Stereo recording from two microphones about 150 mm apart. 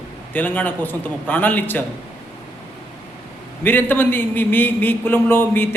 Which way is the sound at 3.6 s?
15° left (ahead or behind).